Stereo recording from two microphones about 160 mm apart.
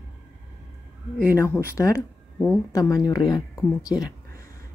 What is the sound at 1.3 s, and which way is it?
Speech, 15° left (ahead or behind).